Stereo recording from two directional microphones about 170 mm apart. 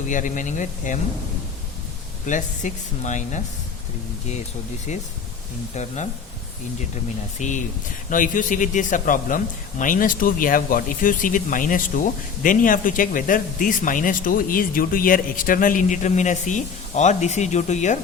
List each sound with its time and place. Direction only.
0.1 s speech: 50° left (ahead or behind)
2.2 s speech: 45° left (ahead or behind)
4.9 s speech: 40° left (ahead or behind)
7.3 s speech: 45° left (ahead or behind)